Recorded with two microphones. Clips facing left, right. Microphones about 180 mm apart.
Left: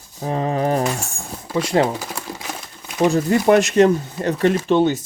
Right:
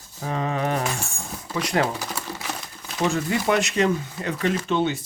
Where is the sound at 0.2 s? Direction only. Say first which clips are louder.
Left 5 dB; 35° left (ahead or behind).